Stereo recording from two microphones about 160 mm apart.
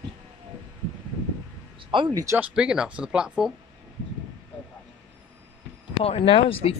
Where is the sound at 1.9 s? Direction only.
25° right (ahead or behind).